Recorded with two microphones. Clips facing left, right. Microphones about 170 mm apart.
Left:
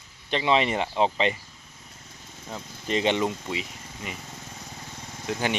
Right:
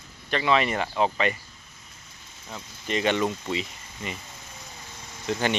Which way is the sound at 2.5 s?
35° left (ahead or behind).